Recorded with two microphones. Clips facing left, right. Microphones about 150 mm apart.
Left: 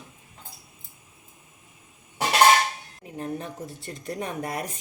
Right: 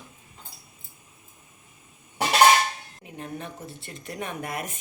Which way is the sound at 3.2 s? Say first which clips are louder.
Left 4 dB; 40° left (ahead or behind).